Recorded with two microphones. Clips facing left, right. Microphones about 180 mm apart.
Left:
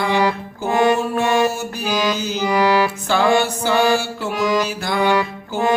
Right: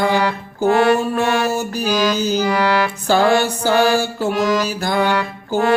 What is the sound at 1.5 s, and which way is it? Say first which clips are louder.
Music: right 5 dB; 35° right (ahead or behind).